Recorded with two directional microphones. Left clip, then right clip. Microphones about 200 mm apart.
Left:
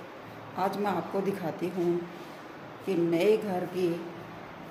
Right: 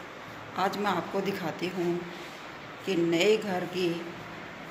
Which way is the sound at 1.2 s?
15° left (ahead or behind).